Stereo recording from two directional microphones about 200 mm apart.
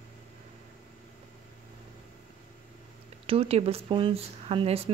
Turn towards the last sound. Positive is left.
turn(degrees=-30)  # may be behind; listen again after turning